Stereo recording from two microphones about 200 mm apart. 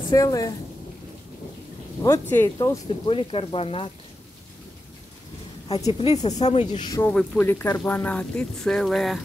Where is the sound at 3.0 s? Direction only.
25° left (ahead or behind).